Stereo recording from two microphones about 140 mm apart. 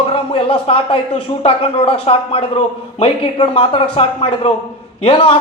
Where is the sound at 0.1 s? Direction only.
45° left (ahead or behind).